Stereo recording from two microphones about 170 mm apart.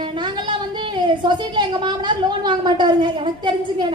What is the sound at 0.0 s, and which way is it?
A woman's voice, 30° right (ahead or behind).